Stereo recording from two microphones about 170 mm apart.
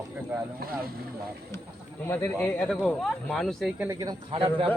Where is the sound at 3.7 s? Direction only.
15° right (ahead or behind).